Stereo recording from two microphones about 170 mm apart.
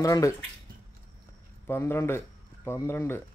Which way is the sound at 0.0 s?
20° left (ahead or behind).